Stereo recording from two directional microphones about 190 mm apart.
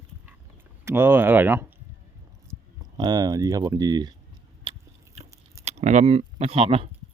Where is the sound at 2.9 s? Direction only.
20° right (ahead or behind).